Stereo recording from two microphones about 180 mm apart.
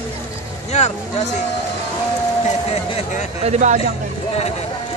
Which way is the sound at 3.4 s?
40° right (ahead or behind).